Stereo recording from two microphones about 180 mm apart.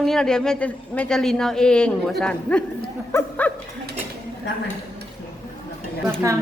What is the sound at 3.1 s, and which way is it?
Dog, 10° left (ahead or behind).